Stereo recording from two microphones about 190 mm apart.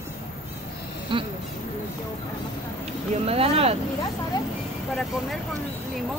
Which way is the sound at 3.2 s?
30° right (ahead or behind).